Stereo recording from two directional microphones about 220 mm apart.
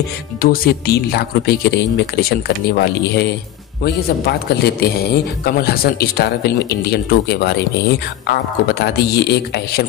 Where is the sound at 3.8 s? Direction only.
45° left (ahead or behind).